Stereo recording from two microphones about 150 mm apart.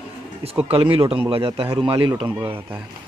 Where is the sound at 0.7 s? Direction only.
40° right (ahead or behind).